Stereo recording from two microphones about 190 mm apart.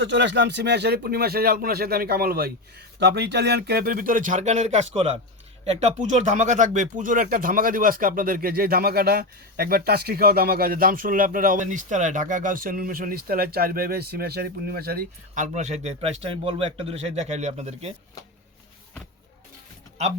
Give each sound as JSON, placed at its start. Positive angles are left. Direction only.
{"t": 0.0, "sound": "speech", "side_deg": -65}